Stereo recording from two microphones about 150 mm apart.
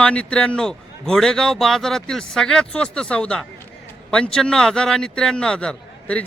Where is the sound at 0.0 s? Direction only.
5° left (ahead or behind).